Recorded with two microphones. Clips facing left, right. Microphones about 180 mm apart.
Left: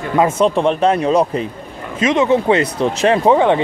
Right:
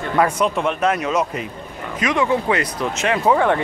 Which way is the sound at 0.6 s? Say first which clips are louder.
Left 5 dB; 30° left (ahead or behind).